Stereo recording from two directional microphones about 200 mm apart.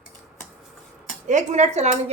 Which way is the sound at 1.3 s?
35° right (ahead or behind).